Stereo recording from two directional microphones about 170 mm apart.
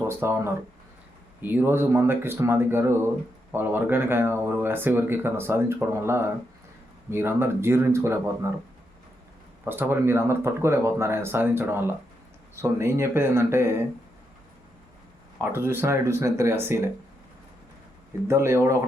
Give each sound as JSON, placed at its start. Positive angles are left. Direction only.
{"t": 0.1, "sound": "speech", "side_deg": -15}
{"t": 9.6, "sound": "speech", "side_deg": -15}
{"t": 15.4, "sound": "speech", "side_deg": -15}
{"t": 18.3, "sound": "speech", "side_deg": -15}